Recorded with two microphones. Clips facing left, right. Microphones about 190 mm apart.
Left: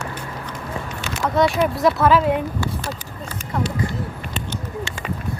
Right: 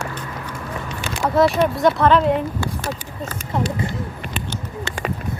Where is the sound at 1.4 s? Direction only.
Centre (ahead or behind).